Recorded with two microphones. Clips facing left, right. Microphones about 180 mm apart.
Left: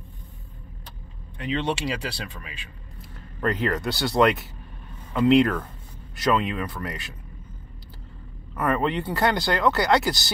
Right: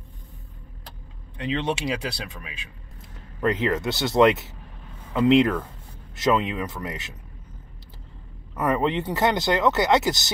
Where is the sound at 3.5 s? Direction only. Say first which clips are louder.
Right 1 dB; 20° right (ahead or behind).